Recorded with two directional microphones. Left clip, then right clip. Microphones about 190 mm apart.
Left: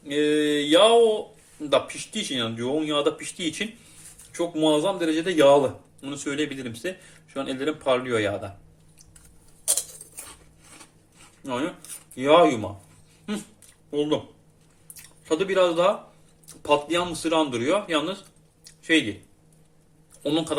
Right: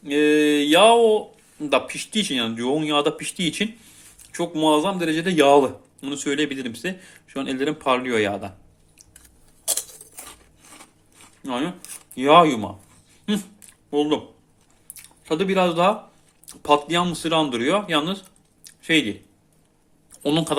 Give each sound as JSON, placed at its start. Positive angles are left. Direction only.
{"t": 0.0, "sound": "a sound", "side_deg": -40}
{"t": 1.7, "sound": "speech", "side_deg": -40}
{"t": 11.4, "sound": "speech", "side_deg": -35}
{"t": 13.9, "sound": "speech", "side_deg": -40}
{"t": 15.2, "sound": "speech", "side_deg": -35}
{"t": 18.6, "sound": "a sound", "side_deg": -35}
{"t": 20.2, "sound": "speech", "side_deg": -40}